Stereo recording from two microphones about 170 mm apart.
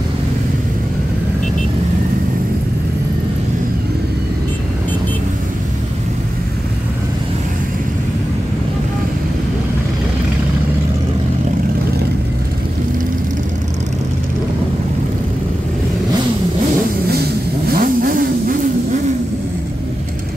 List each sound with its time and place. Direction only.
17.7 s vehicle: 55° right (ahead or behind)